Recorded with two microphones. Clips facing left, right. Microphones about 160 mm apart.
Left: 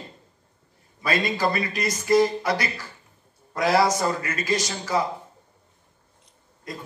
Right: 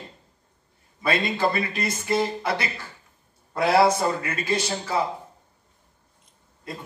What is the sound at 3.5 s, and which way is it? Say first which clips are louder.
Speech: right 2 dB; 30° right (ahead or behind).